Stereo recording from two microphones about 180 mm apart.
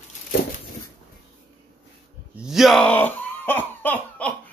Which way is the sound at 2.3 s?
Centre (ahead or behind).